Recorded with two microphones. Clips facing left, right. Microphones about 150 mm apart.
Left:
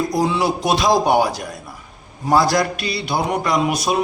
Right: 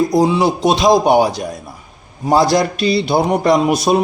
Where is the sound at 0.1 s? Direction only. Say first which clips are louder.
Right 5 dB; 20° right (ahead or behind).